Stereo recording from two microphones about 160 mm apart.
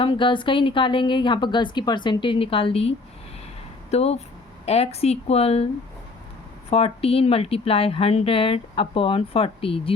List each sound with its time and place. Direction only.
0.0 s speech: 30° left (ahead or behind)
3.9 s speech: 40° left (ahead or behind)
6.7 s speech: 40° left (ahead or behind)